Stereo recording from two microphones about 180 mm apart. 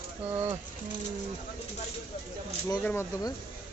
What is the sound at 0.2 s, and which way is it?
Speech, 10° right (ahead or behind).